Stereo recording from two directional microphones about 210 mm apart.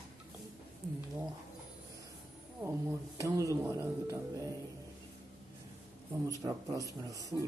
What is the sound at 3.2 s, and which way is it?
Speech, 15° right (ahead or behind).